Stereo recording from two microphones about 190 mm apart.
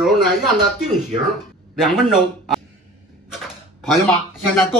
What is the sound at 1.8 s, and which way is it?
Speech, centre (ahead or behind).